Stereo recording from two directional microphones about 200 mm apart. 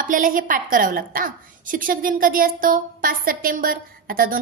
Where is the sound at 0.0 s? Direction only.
40° right (ahead or behind).